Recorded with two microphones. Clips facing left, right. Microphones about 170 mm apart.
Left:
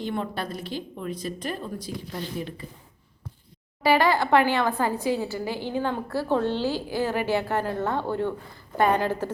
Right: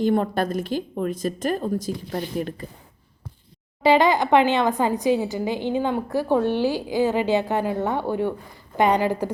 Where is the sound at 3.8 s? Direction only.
20° right (ahead or behind).